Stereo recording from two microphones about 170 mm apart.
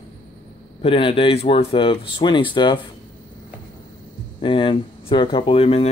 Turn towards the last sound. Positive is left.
turn(degrees=35)  # may be behind; listen again after turning